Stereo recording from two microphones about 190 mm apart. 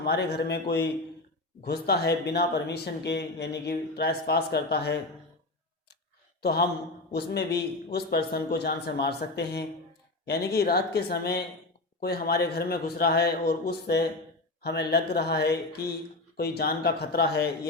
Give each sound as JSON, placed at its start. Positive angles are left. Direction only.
{"t": 0.0, "sound": "speech", "side_deg": 60}
{"t": 6.4, "sound": "a man's voice", "side_deg": 55}